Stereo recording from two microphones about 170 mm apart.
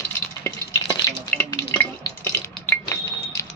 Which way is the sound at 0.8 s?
20° left (ahead or behind).